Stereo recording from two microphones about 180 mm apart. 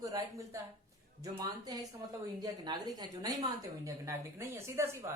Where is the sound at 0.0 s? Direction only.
20° right (ahead or behind).